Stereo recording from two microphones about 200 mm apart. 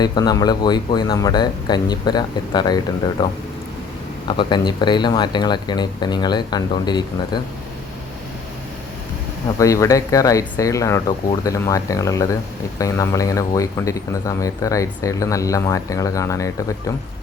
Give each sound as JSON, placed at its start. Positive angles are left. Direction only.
{"t": 0.0, "sound": "speech", "side_deg": 20}
{"t": 4.3, "sound": "speech", "side_deg": 25}
{"t": 9.6, "sound": "speech", "side_deg": 15}